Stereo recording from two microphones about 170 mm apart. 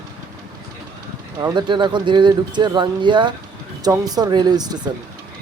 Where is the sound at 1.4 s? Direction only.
25° right (ahead or behind).